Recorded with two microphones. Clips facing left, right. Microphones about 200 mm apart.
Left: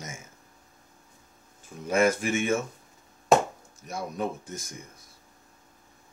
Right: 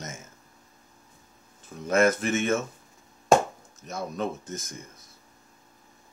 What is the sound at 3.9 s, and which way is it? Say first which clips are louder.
Speech: right 1 dB; 10° left (ahead or behind).